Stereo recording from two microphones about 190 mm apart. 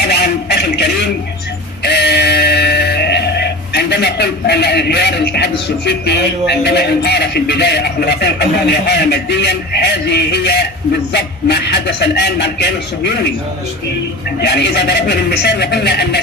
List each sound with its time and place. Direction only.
0.0 s a sound: 60° left (ahead or behind)
1.8 s music: 60° left (ahead or behind)
6.5 s speech: 60° left (ahead or behind)
14.4 s speech: 60° left (ahead or behind)